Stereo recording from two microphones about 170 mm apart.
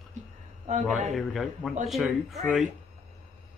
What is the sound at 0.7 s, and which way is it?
Speech, 45° right (ahead or behind).